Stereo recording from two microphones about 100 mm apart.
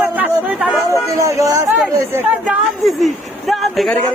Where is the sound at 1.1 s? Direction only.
35° right (ahead or behind).